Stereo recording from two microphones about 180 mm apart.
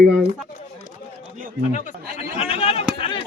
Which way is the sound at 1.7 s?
45° left (ahead or behind).